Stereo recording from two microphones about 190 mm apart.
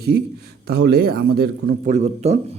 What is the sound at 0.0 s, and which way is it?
A man's voice, 60° right (ahead or behind).